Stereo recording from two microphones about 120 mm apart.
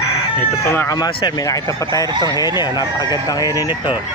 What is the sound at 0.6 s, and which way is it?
Speech, 20° left (ahead or behind).